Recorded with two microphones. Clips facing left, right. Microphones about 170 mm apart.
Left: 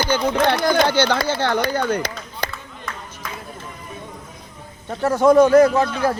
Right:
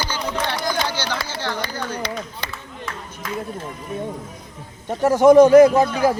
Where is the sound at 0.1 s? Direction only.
60° left (ahead or behind).